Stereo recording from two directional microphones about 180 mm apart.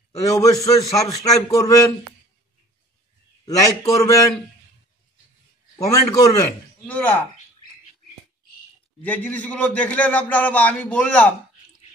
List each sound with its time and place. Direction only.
0.2 s a man's voice: 20° left (ahead or behind)
3.4 s a man's voice: 15° left (ahead or behind)
5.8 s a man's voice: 20° left (ahead or behind)
9.0 s a man's voice: 10° left (ahead or behind)